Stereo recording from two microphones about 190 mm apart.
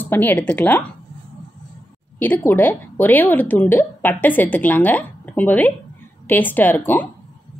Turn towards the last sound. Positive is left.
turn(degrees=10)  # may be behind; listen again after turning